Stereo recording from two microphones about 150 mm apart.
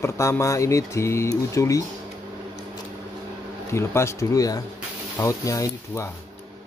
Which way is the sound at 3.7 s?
20° left (ahead or behind).